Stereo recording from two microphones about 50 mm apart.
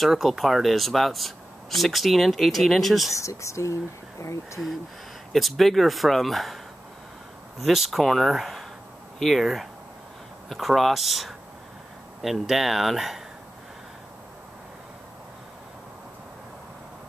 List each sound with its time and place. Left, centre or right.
0.0 s speech: centre
3.2 s speech: left
5.3 s speech: centre